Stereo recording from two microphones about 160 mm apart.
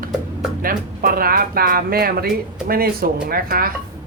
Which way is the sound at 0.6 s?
65° right (ahead or behind).